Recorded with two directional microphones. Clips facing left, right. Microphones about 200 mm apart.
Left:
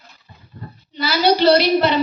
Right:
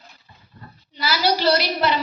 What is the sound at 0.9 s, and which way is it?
Child singing, 25° left (ahead or behind).